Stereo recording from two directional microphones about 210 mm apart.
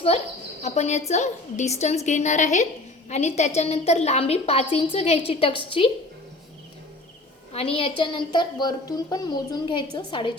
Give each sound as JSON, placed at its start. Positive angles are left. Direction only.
{"t": 0.6, "sound": "a woman's voice", "side_deg": 30}
{"t": 7.5, "sound": "a woman's voice", "side_deg": 25}